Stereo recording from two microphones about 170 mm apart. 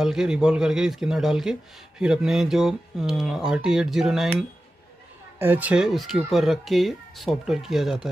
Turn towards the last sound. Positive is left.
turn(degrees=0)  # may be behind; listen again after turning